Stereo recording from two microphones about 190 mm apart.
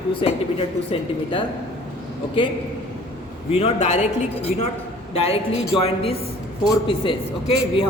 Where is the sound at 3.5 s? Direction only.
35° left (ahead or behind).